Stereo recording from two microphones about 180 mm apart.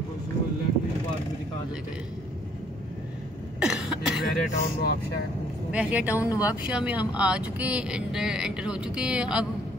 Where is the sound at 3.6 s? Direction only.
5° right (ahead or behind).